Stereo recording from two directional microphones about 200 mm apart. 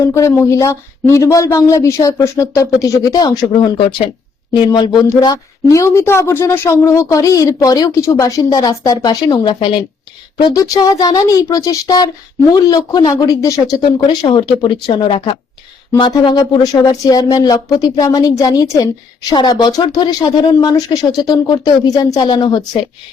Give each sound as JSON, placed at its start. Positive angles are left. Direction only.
{"t": 0.0, "sound": "speech", "side_deg": 15}